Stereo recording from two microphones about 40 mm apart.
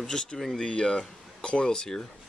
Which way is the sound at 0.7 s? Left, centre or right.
Left.